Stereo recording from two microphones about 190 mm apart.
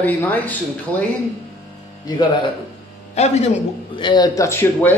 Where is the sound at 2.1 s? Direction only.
20° left (ahead or behind).